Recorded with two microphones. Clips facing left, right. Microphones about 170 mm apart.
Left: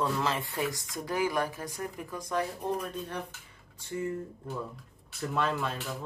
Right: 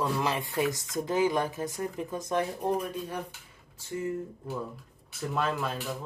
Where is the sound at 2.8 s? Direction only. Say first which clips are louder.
Right 2 dB; 10° right (ahead or behind).